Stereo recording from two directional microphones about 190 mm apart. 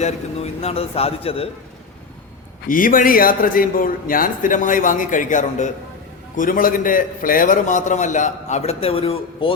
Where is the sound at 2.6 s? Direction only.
45° left (ahead or behind).